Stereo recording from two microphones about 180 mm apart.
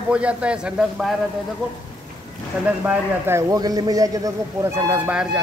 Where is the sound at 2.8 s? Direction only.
10° right (ahead or behind).